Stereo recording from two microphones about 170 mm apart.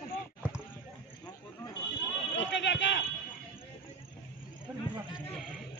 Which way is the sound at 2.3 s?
90° left.